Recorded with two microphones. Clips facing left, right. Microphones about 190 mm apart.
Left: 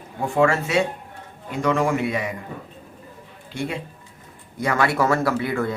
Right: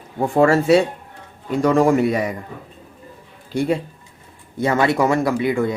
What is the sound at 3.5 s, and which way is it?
Speech, 35° right (ahead or behind).